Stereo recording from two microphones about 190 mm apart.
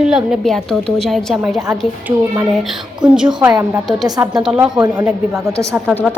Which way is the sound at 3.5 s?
15° right (ahead or behind).